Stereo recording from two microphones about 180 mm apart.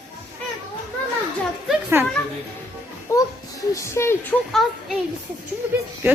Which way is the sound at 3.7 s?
15° left (ahead or behind).